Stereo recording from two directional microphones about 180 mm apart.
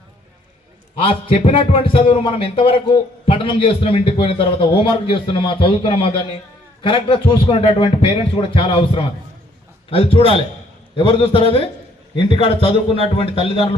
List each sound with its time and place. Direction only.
0.9 s a man's voice: 30° left (ahead or behind)